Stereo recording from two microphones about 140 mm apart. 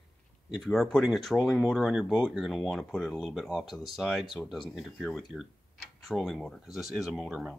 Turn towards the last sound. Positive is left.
turn(degrees=-5)  # may be behind; listen again after turning